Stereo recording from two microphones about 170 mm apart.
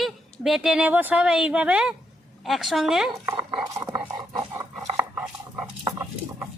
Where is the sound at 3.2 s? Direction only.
20° right (ahead or behind).